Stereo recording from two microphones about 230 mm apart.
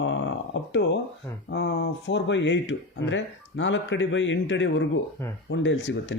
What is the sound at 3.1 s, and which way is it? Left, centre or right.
Speech, left.